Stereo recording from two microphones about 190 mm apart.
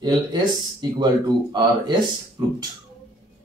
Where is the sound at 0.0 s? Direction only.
25° right (ahead or behind).